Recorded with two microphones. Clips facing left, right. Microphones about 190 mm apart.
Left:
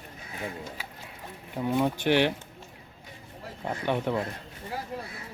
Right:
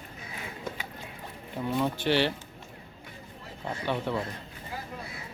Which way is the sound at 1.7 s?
15° left (ahead or behind).